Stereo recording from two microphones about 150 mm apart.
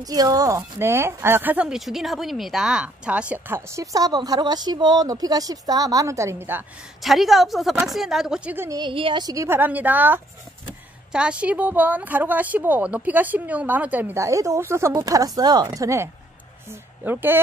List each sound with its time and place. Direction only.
0.0 s speech: 25° right (ahead or behind)
7.0 s speech: centre (ahead or behind)
8.6 s a woman's voice: 30° right (ahead or behind); by 17.4 s 15° right (ahead or behind)